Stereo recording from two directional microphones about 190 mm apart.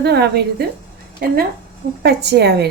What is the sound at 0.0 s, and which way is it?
Speech, 60° right (ahead or behind).